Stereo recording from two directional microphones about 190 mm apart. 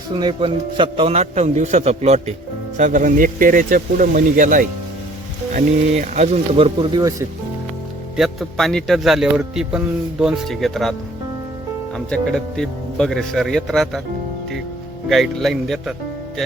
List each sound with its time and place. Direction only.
0.1 s a man's voice: 25° right (ahead or behind)
8.1 s a man's voice: centre (ahead or behind)
11.9 s a man's voice: 5° left (ahead or behind)
15.1 s a man's voice: centre (ahead or behind)